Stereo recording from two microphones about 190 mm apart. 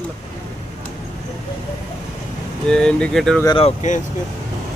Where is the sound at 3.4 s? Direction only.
30° left (ahead or behind).